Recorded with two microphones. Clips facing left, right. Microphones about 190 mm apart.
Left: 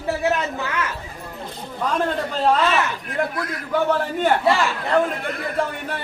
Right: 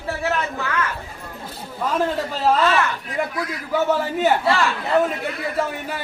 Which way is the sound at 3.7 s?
5° right (ahead or behind).